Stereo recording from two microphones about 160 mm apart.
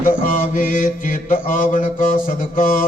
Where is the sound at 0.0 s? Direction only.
55° left (ahead or behind).